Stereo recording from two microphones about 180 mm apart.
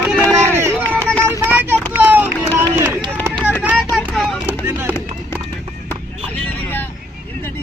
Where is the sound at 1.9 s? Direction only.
10° right (ahead or behind).